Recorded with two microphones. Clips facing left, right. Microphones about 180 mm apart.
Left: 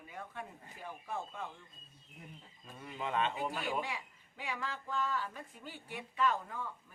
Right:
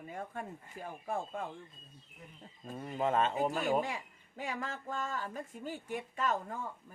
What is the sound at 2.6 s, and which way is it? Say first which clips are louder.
A man's voice: right 8 dB; 45° right (ahead or behind).